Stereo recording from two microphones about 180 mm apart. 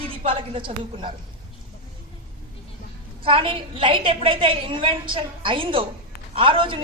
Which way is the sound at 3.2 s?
30° right (ahead or behind).